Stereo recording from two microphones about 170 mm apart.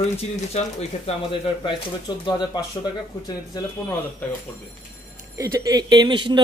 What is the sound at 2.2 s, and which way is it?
Speech, 25° left (ahead or behind).